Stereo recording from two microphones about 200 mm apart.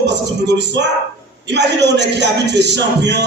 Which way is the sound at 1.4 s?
60° right (ahead or behind).